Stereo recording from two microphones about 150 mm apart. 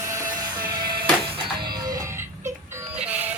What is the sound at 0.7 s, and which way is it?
Music, 30° right (ahead or behind).